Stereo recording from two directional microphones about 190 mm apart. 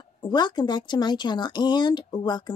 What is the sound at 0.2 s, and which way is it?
Speech, 25° left (ahead or behind).